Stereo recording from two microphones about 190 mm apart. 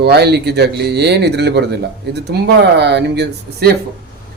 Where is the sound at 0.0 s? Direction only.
60° right (ahead or behind).